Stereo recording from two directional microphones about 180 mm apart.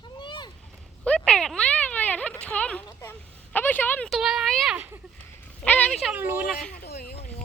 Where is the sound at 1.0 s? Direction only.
5° left (ahead or behind).